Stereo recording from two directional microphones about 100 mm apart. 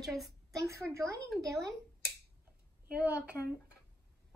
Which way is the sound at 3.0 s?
15° right (ahead or behind).